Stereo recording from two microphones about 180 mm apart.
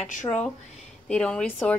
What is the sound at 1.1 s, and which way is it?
Speech, 5° left (ahead or behind).